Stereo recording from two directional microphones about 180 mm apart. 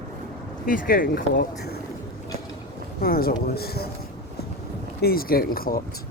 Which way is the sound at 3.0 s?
55° left (ahead or behind).